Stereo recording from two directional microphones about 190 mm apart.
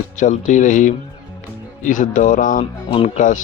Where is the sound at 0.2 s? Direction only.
40° left (ahead or behind).